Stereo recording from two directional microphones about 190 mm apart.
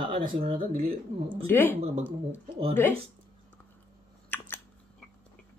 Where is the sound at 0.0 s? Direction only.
25° right (ahead or behind).